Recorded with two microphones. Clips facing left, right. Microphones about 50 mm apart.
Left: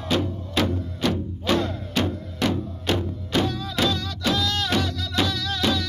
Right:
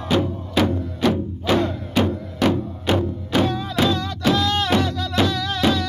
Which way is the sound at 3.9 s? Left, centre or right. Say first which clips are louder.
Right 5 dB; right.